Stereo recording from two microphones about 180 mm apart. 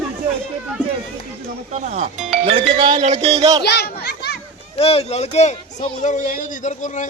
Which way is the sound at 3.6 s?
65° left (ahead or behind).